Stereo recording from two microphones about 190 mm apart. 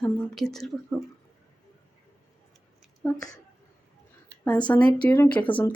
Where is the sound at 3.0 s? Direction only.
5° left (ahead or behind).